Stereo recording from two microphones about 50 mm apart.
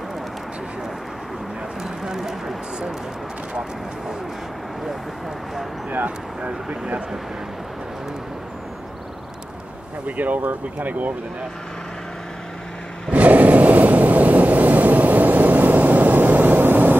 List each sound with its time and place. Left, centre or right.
1.8 s a sound: centre
5.9 s speech: right
10.0 s speech: right
13.1 s vehicle: right